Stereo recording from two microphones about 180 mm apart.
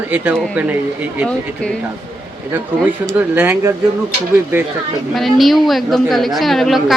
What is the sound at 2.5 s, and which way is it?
Speech, 10° right (ahead or behind).